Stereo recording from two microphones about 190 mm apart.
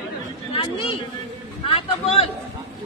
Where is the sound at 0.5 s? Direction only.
30° left (ahead or behind).